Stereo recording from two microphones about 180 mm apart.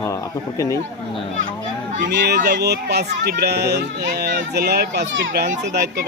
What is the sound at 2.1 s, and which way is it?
A child's voice, 65° right (ahead or behind).